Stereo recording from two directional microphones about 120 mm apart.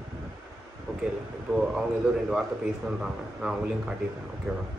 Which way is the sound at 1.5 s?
5° right (ahead or behind).